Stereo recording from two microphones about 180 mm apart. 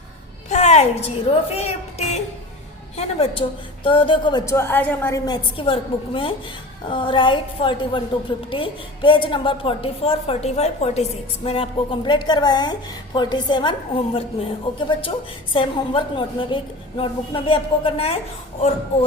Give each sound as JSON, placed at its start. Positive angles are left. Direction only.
{"t": 0.5, "sound": "a child's voice", "side_deg": 40}
{"t": 4.5, "sound": "a woman's voice", "side_deg": 10}